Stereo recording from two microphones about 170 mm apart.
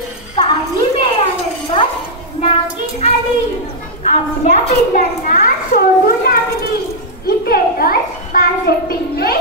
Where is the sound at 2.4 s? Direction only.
35° left (ahead or behind).